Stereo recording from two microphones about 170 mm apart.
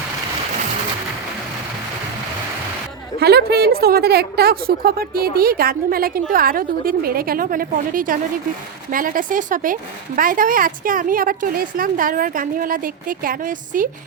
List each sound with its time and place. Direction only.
3.2 s a woman's voice: 70° right (ahead or behind); by 13.8 s 50° right (ahead or behind)